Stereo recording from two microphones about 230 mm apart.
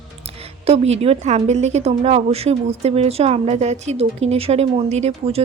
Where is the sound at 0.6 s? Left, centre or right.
Right.